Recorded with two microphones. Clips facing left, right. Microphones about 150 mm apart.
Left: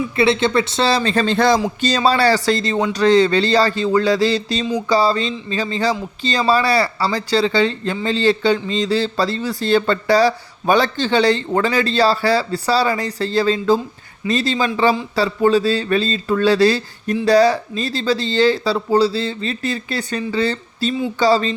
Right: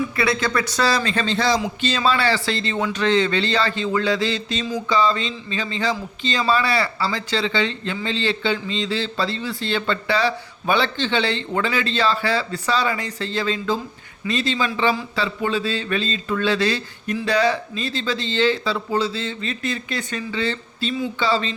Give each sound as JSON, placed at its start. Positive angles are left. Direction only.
{"t": 0.2, "sound": "a man's voice", "side_deg": 25}
{"t": 1.6, "sound": "speech", "side_deg": 35}